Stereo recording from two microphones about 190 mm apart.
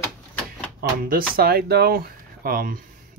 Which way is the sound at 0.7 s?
50° right (ahead or behind).